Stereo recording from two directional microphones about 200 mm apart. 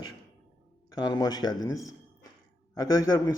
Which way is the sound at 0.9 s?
20° left (ahead or behind).